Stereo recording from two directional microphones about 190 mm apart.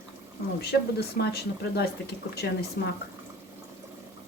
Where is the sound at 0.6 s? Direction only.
55° left (ahead or behind).